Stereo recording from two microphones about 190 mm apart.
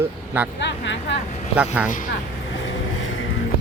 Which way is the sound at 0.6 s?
70° left (ahead or behind).